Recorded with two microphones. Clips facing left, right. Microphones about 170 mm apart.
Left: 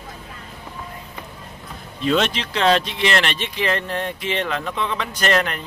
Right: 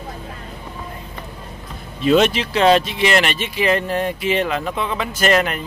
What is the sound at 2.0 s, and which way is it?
Speech, 5° right (ahead or behind).